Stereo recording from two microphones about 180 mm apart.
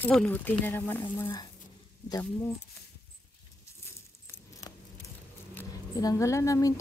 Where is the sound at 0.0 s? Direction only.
5° left (ahead or behind).